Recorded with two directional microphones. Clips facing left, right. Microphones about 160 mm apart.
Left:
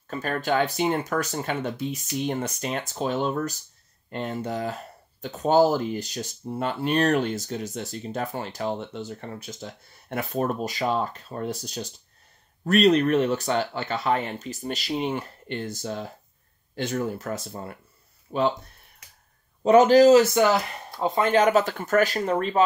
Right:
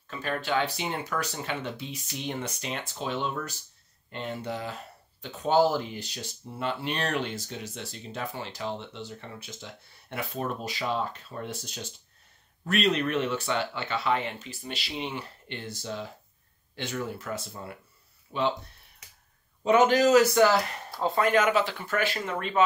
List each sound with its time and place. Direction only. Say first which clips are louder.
0.0 s speech: left 4 dB; 45° left (ahead or behind)
19.6 s speech: left 6 dB; 35° left (ahead or behind)